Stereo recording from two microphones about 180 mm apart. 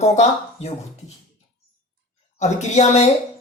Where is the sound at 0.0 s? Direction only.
35° left (ahead or behind).